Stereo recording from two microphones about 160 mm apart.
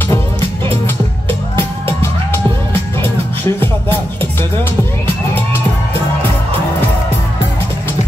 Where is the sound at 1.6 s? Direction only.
15° left (ahead or behind).